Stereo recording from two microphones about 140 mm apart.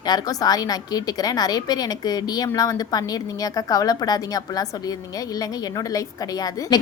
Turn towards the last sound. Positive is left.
turn(degrees=25)  # may be behind; listen again after turning